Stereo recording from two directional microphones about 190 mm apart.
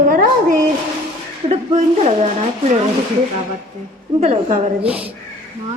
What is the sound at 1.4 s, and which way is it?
A woman's voice, 35° right (ahead or behind).